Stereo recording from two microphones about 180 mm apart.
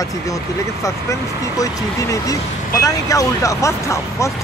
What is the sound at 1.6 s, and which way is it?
Speech, 20° left (ahead or behind).